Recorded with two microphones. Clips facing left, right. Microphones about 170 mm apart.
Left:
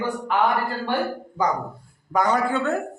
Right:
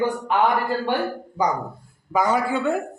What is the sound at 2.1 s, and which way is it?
Speech, 5° right (ahead or behind).